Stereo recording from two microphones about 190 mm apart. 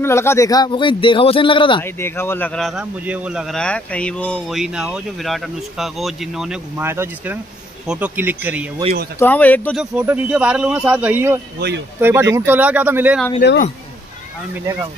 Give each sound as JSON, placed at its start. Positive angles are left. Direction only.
{"t": 0.0, "sound": "a man's voice", "side_deg": 15}
{"t": 1.8, "sound": "a man's voice", "side_deg": 10}
{"t": 9.2, "sound": "speech", "side_deg": 10}
{"t": 9.8, "sound": "speech", "side_deg": -5}
{"t": 13.4, "sound": "speech", "side_deg": 60}
{"t": 14.5, "sound": "speech", "side_deg": -10}